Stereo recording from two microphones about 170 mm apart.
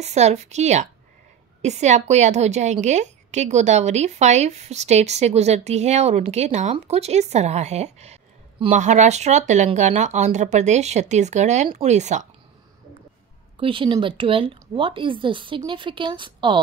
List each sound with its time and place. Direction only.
0.0 s a woman's voice: 40° right (ahead or behind)
13.6 s speech: 30° right (ahead or behind)